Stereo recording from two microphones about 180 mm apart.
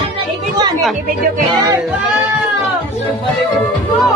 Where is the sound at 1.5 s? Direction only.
20° right (ahead or behind).